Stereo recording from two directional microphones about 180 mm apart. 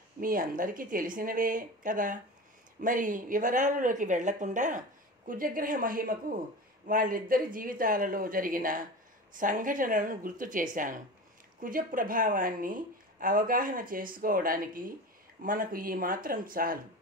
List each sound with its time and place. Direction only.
0.2 s speech: 50° right (ahead or behind)